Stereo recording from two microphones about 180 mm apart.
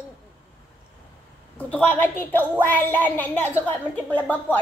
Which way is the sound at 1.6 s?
10° left (ahead or behind).